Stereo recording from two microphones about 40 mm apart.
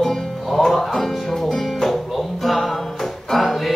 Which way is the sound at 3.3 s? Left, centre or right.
Centre.